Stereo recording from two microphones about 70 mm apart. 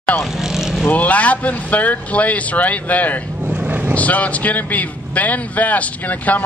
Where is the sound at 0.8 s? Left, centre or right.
Left.